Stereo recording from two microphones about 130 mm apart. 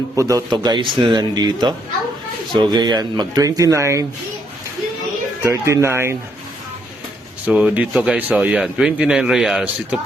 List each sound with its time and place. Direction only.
0.2 s speech: 25° right (ahead or behind)
0.5 s speech: 35° right (ahead or behind)
5.4 s speech: 20° right (ahead or behind)
7.4 s a man's voice: 10° right (ahead or behind)